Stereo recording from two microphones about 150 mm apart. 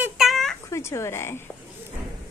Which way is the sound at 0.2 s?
Centre (ahead or behind).